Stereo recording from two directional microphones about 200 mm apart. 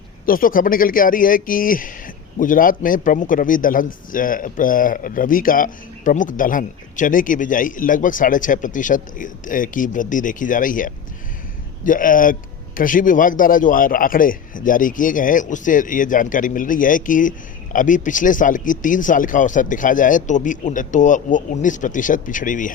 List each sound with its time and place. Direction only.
0.3 s a man's voice: 45° left (ahead or behind)